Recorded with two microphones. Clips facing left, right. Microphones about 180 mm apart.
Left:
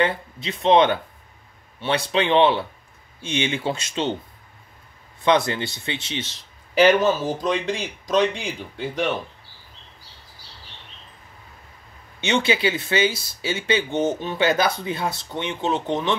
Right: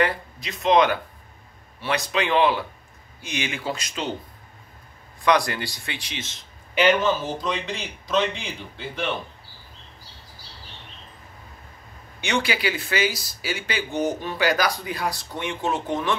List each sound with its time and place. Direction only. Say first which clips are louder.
0.0 s speech: left 1 dB; 25° left (ahead or behind)
5.2 s a man's voice: left 2 dB; 25° left (ahead or behind); by 9.1 s 40° left (ahead or behind)
12.2 s speech: left 4 dB; 25° left (ahead or behind)